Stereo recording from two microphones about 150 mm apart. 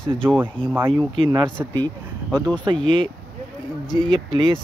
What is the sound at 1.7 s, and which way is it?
Speech, 25° right (ahead or behind).